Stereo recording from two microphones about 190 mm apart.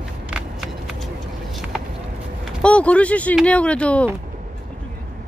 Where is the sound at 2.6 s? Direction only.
5° left (ahead or behind).